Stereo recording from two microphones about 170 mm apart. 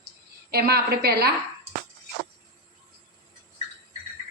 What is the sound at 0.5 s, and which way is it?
Speech, 65° right (ahead or behind).